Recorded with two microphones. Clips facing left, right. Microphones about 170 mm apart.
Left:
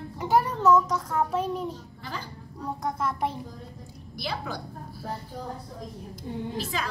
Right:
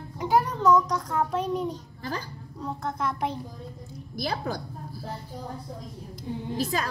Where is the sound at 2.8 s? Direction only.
5° left (ahead or behind).